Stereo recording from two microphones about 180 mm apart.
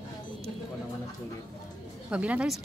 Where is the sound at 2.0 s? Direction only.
5° right (ahead or behind).